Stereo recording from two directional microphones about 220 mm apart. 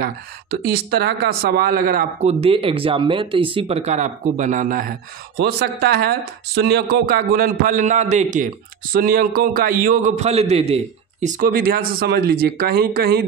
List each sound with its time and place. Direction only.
0.0 s speech: 45° right (ahead or behind)
2.4 s a man's voice: 25° right (ahead or behind); by 13.2 s 45° right (ahead or behind)